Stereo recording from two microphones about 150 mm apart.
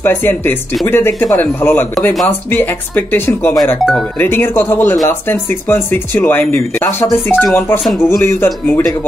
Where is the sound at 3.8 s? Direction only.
Centre (ahead or behind).